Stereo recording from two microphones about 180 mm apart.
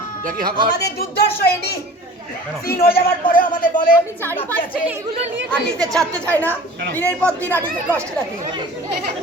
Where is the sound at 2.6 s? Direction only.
55° left (ahead or behind).